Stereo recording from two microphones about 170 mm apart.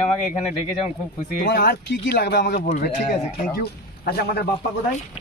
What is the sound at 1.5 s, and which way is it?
Speech, 65° left (ahead or behind).